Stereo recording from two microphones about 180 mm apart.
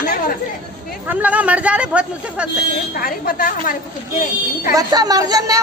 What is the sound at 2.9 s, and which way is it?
Speech, 55° left (ahead or behind).